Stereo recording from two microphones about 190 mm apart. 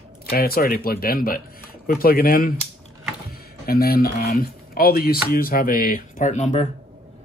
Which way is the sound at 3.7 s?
55° left (ahead or behind).